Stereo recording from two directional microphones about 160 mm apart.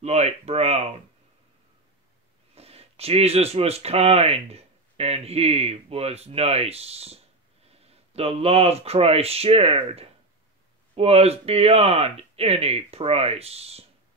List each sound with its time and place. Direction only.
0.0 s speech: 45° right (ahead or behind)
2.5 s speech: 40° right (ahead or behind)